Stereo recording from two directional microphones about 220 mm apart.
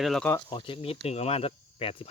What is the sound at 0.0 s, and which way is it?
Speech, 5° left (ahead or behind).